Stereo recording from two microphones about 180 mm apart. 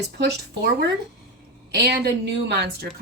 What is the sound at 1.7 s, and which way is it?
Speech, 65° right (ahead or behind).